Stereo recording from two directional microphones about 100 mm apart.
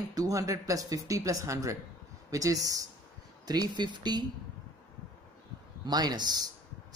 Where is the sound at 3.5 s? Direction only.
45° right (ahead or behind).